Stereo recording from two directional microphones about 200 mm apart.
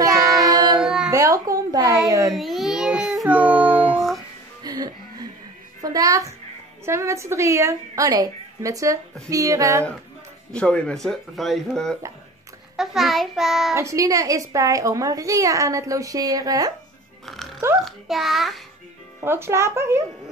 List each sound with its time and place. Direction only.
0.5 s child singing: 20° right (ahead or behind)
0.7 s music: 5° right (ahead or behind)
1.1 s speech: 15° right (ahead or behind)
2.3 s a child's voice: centre (ahead or behind)
4.6 s a child's voice: 20° right (ahead or behind)
10.5 s speech: 5° left (ahead or behind)
13.7 s a child's voice: 15° right (ahead or behind)
17.3 s music: centre (ahead or behind)
17.8 s speech: centre (ahead or behind)
19.2 s a child's voice: 10° right (ahead or behind)